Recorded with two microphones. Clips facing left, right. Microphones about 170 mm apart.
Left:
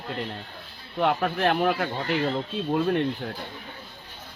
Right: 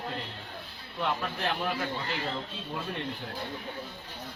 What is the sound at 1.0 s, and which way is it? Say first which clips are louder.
Speech: left 8 dB; 60° left (ahead or behind).